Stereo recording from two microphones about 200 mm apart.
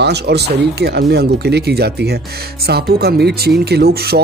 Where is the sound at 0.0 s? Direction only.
55° right (ahead or behind).